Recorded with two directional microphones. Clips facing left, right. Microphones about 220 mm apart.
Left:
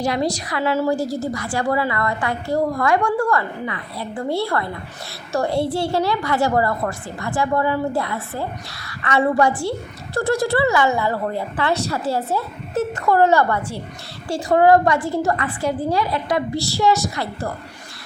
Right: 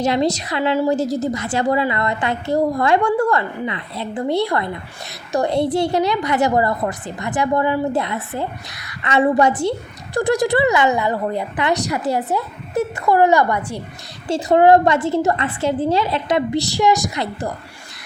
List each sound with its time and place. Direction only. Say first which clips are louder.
0.0 s a woman's voice: right 3 dB; 25° right (ahead or behind)